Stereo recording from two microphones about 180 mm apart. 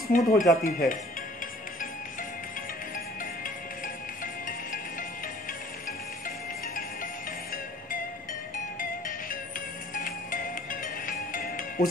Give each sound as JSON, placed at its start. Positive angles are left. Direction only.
{"t": 0.1, "sound": "speech", "side_deg": 50}
{"t": 3.4, "sound": "music", "side_deg": 50}
{"t": 5.9, "sound": "music", "side_deg": 50}
{"t": 8.7, "sound": "music", "side_deg": 50}